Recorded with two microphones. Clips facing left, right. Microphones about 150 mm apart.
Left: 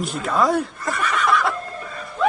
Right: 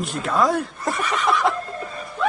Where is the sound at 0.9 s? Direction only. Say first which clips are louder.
Even; 20° right (ahead or behind).